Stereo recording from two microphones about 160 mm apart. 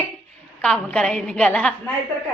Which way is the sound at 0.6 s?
5° left (ahead or behind).